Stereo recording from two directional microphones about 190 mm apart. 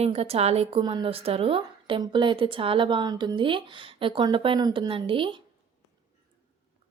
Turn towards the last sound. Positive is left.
turn(degrees=-25)  # may be behind; listen again after turning